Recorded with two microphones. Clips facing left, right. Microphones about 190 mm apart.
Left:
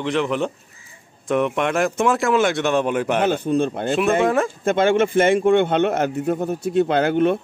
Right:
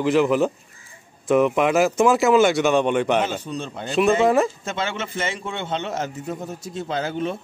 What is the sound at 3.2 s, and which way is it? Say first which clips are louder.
A man's voice: left 7 dB; 55° left (ahead or behind).